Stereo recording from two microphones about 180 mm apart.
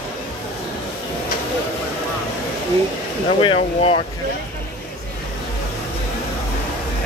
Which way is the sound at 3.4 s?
30° left (ahead or behind).